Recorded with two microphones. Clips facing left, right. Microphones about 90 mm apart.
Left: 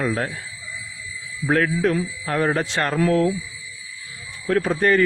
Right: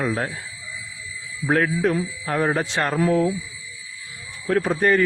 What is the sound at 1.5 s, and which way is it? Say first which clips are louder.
A man's voice: left 1 dB; 15° right (ahead or behind).